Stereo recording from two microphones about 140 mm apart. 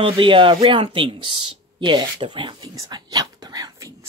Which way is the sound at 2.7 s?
25° right (ahead or behind).